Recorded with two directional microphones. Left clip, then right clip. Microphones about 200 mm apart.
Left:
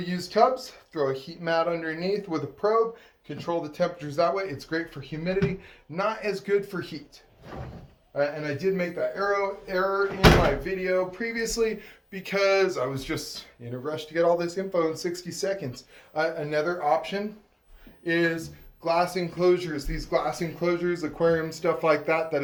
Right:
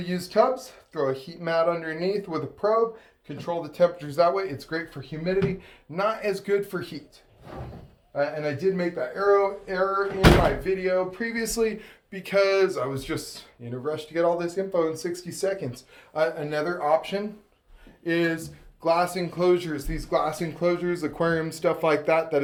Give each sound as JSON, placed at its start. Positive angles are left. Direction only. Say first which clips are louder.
{"t": 0.0, "sound": "a man's voice", "louder": "even", "side_deg": -35}
{"t": 8.1, "sound": "a man's voice", "louder": "right 1 dB", "side_deg": -40}